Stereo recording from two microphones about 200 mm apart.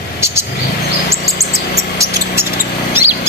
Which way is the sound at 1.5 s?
15° right (ahead or behind).